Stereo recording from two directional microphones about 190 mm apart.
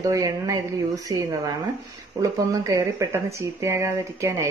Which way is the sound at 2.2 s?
15° right (ahead or behind).